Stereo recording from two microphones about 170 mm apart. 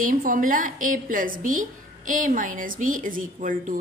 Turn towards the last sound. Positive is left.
turn(degrees=-50)  # may be behind; listen again after turning